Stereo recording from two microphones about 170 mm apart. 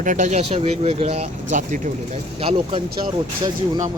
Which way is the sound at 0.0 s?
50° right (ahead or behind).